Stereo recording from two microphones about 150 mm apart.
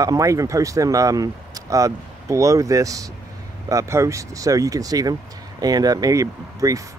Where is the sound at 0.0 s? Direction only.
20° right (ahead or behind).